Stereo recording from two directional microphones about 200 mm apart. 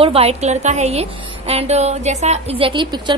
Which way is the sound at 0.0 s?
30° right (ahead or behind).